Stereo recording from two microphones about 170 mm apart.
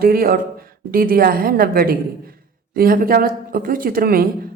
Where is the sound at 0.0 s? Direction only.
60° right (ahead or behind).